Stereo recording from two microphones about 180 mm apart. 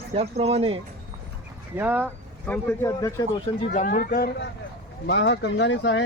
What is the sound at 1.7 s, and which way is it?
Speech, 10° right (ahead or behind).